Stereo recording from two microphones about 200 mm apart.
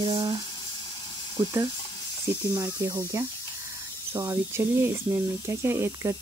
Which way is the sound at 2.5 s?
15° right (ahead or behind).